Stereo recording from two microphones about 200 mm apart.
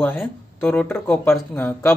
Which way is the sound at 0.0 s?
10° left (ahead or behind).